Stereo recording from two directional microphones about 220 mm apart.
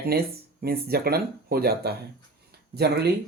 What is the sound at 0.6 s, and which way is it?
Speech, 45° right (ahead or behind).